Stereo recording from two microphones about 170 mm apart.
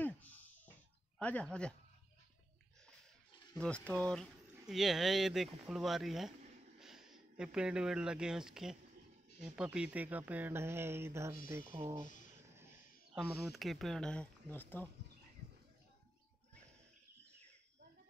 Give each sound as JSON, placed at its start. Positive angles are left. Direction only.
{"t": 0.0, "sound": "a sound", "side_deg": 10}
{"t": 1.2, "sound": "speech", "side_deg": 5}
{"t": 3.5, "sound": "speech", "side_deg": 5}